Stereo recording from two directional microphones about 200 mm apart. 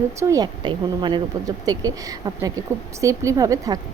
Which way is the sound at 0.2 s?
15° right (ahead or behind).